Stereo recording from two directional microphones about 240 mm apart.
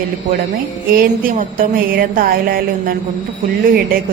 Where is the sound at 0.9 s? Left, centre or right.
Right.